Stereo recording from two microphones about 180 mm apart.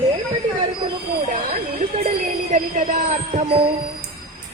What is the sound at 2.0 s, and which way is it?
Speech, 45° right (ahead or behind).